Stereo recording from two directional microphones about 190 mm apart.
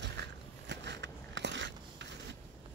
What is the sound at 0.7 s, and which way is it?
Biting, 65° right (ahead or behind).